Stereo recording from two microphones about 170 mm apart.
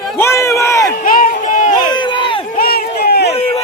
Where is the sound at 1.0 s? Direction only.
50° left (ahead or behind).